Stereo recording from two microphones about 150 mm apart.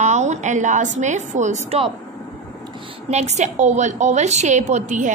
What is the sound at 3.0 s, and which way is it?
A woman's voice, 50° right (ahead or behind).